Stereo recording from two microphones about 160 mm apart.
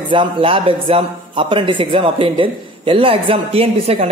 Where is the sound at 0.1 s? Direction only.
35° right (ahead or behind).